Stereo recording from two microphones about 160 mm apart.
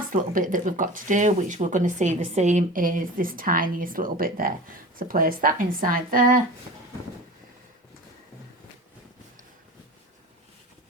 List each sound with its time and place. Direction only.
0.1 s speech: 55° right (ahead or behind)